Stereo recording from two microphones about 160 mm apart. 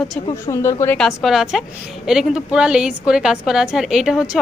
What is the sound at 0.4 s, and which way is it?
Speech, 15° left (ahead or behind).